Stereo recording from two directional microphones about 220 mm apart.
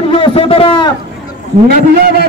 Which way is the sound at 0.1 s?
25° left (ahead or behind).